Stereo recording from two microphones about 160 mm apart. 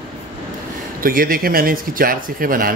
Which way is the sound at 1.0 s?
65° right (ahead or behind).